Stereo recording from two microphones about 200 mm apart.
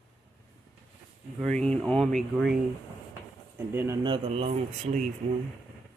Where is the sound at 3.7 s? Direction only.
10° right (ahead or behind).